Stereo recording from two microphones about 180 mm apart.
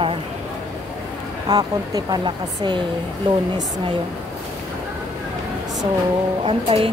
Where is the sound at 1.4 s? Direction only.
20° right (ahead or behind).